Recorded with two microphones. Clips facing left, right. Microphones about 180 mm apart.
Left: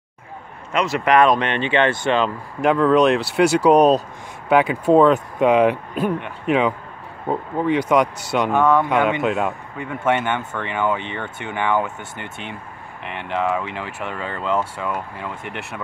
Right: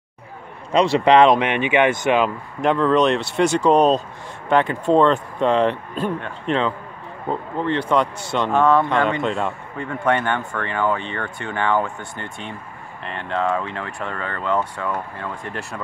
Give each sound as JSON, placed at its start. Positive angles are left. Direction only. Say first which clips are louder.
{"t": 0.7, "sound": "speech", "louder": "right 3 dB", "side_deg": -30}
{"t": 1.4, "sound": "speech", "louder": "right 1 dB", "side_deg": -10}
{"t": 2.6, "sound": "speech", "louder": "left 2 dB", "side_deg": 5}
{"t": 10.0, "sound": "speech", "louder": "even", "side_deg": 20}
{"t": 13.3, "sound": "speech", "louder": "even", "side_deg": 10}